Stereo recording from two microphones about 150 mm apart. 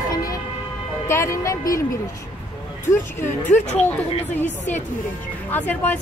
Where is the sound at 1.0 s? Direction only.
20° left (ahead or behind).